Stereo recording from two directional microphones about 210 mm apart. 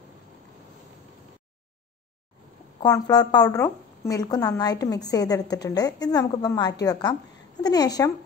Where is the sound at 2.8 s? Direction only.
20° left (ahead or behind).